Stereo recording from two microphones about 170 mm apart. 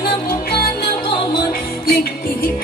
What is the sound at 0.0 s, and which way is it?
Music, 60° left (ahead or behind).